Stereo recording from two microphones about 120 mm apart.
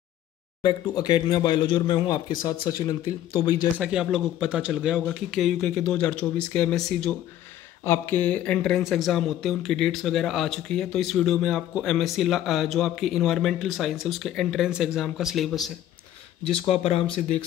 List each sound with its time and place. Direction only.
0.6 s speech: 40° left (ahead or behind)
3.7 s a man's voice: 10° right (ahead or behind); by 6.8 s 10° left (ahead or behind)
7.8 s speech: 20° left (ahead or behind); by 15.7 s centre (ahead or behind)
16.6 s speech: 55° left (ahead or behind)